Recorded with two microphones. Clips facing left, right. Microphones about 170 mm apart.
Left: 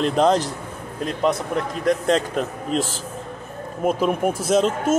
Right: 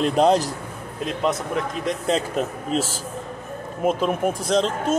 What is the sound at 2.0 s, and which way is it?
Speech, 5° right (ahead or behind).